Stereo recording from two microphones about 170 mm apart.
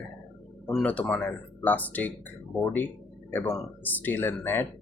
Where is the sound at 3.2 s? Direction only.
15° left (ahead or behind).